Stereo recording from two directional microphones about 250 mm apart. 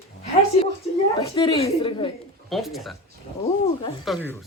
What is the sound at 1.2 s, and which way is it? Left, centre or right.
Speech, centre.